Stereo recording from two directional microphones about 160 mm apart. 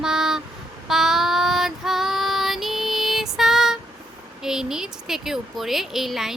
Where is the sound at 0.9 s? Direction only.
Centre (ahead or behind).